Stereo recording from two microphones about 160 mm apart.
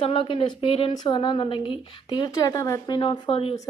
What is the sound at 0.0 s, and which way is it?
A woman's voice, 35° left (ahead or behind).